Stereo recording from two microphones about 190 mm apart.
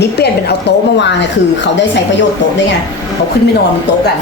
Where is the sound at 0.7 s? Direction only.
60° left (ahead or behind).